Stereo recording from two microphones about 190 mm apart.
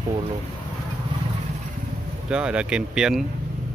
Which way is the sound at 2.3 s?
5° right (ahead or behind).